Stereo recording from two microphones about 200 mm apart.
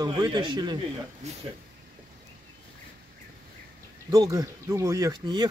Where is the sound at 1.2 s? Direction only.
35° right (ahead or behind).